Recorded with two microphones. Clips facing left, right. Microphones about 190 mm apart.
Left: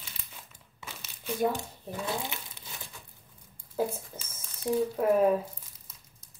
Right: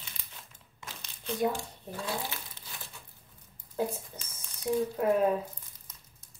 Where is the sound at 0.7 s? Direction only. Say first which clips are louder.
Left 1 dB; 5° left (ahead or behind).